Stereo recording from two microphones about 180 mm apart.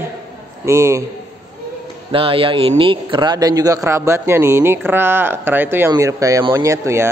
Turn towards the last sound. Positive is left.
turn(degrees=-15)  # may be behind; listen again after turning